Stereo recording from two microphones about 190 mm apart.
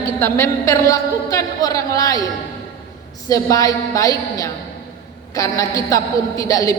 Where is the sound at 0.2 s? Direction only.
10° left (ahead or behind).